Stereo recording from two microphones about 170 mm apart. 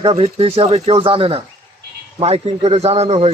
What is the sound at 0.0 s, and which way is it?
A man's voice, 35° right (ahead or behind).